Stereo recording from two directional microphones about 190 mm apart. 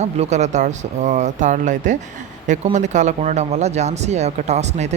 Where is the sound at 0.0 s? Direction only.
35° right (ahead or behind).